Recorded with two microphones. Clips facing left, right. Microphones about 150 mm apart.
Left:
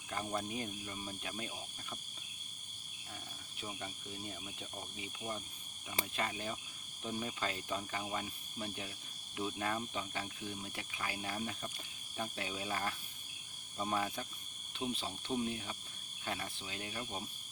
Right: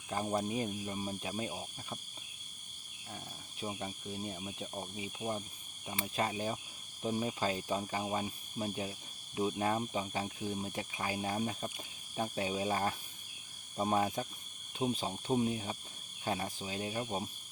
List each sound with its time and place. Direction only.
0.1 s speech: 30° right (ahead or behind)
3.6 s speech: 25° right (ahead or behind)